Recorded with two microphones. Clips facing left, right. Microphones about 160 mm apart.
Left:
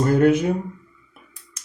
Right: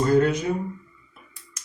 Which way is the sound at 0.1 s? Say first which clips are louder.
Left 4 dB; 55° left (ahead or behind).